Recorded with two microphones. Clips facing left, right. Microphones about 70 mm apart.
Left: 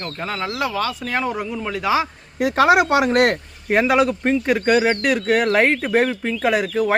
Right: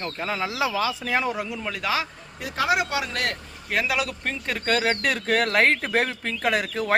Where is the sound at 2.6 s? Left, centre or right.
Left.